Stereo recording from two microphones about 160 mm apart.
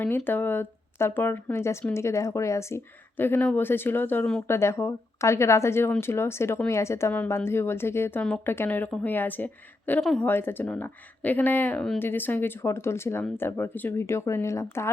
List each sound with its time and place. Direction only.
0.3 s speech: 10° left (ahead or behind)